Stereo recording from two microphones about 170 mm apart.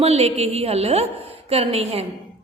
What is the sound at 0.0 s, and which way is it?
A woman's voice, 35° right (ahead or behind).